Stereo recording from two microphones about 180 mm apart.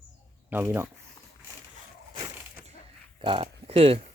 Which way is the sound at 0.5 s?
10° right (ahead or behind).